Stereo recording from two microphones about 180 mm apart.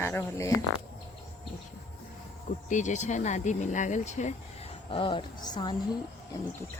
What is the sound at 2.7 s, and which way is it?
Speech, 40° left (ahead or behind).